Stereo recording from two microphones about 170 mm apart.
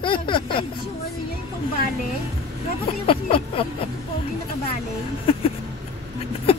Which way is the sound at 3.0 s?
35° left (ahead or behind).